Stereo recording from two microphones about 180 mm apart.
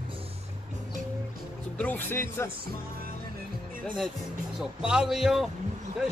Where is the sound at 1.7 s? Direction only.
10° left (ahead or behind).